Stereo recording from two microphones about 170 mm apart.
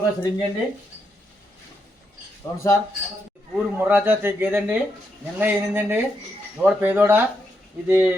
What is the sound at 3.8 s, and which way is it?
Speech, 10° right (ahead or behind).